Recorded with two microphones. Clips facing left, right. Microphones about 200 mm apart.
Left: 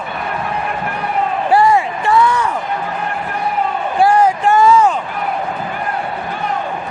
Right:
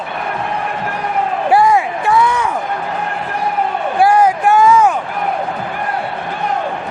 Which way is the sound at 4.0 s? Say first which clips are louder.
Right 1 dB; 10° right (ahead or behind).